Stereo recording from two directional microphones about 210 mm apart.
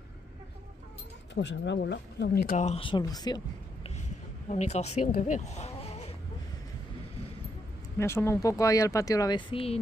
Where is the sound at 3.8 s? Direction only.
30° left (ahead or behind).